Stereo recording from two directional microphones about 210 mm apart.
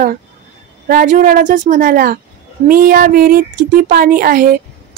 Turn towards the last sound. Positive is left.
turn(degrees=-45)  # may be behind; listen again after turning